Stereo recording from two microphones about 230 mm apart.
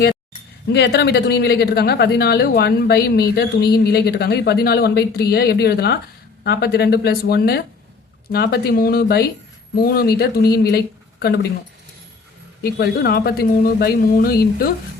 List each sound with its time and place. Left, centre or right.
0.7 s speech: left
12.6 s speech: left